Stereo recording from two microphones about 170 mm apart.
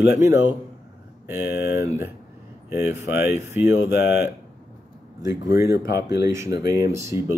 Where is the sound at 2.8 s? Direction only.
15° right (ahead or behind).